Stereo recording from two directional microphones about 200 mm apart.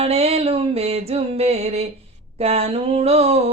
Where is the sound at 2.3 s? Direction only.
30° right (ahead or behind).